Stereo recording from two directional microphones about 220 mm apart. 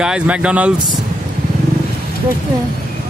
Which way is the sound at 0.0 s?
5° right (ahead or behind).